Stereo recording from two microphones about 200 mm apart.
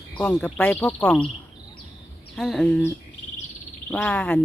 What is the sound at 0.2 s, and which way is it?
Speech, 5° left (ahead or behind).